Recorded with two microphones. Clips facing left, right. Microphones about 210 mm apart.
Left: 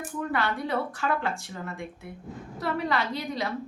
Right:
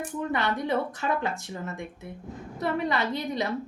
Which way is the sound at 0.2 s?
20° right (ahead or behind).